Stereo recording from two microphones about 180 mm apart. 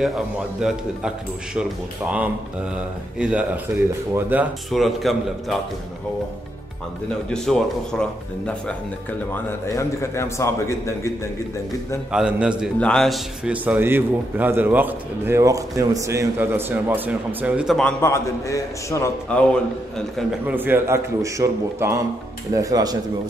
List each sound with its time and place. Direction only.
0.6 s a man's voice: 5° right (ahead or behind)
7.3 s a man's voice: 5° left (ahead or behind)
12.1 s a man's voice: 5° right (ahead or behind)
18.0 s a man's voice: 15° left (ahead or behind)
19.3 s a man's voice: 5° left (ahead or behind)
20.2 s a man's voice: 10° right (ahead or behind)